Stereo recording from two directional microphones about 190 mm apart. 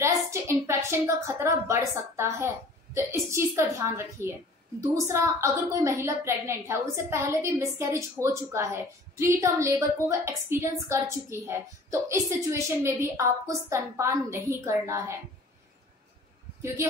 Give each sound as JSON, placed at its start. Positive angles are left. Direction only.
{"t": 0.0, "sound": "a woman's voice", "side_deg": -15}